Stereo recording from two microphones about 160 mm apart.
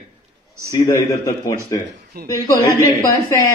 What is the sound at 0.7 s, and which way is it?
A man's voice, 20° left (ahead or behind).